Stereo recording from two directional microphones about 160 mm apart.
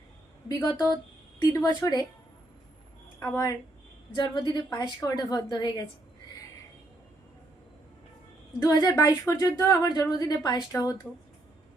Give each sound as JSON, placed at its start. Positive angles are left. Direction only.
{"t": 0.4, "sound": "a woman's voice", "side_deg": 25}
{"t": 3.2, "sound": "a woman's voice", "side_deg": 15}
{"t": 4.1, "sound": "a woman's voice", "side_deg": 30}
{"t": 8.5, "sound": "a woman's voice", "side_deg": 20}